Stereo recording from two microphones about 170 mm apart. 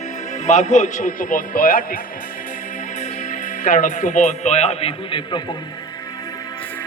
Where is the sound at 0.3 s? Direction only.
45° left (ahead or behind).